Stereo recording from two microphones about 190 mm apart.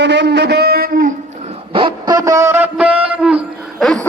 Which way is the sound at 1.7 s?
25° right (ahead or behind).